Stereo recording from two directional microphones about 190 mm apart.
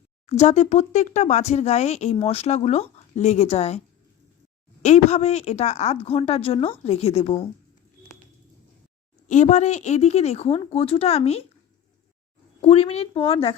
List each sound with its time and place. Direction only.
0.3 s speech: 35° left (ahead or behind)
4.8 s speech: 35° left (ahead or behind)
9.2 s speech: 40° left (ahead or behind)
12.6 s speech: 30° left (ahead or behind)